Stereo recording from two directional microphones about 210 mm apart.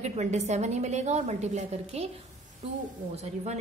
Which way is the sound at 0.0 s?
35° right (ahead or behind).